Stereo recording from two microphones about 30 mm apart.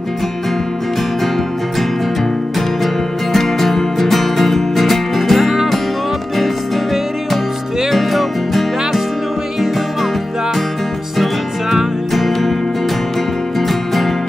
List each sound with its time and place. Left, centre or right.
3.3 s music: centre
11.7 s music: centre
13.6 s music: centre